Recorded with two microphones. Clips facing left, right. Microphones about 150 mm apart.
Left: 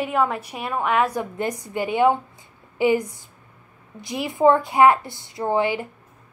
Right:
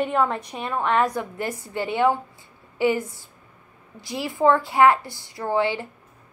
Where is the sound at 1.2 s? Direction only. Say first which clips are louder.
Left 3 dB; 20° left (ahead or behind).